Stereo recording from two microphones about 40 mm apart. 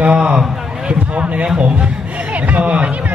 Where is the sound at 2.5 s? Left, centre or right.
Right.